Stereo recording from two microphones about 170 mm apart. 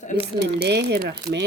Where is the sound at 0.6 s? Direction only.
80° right.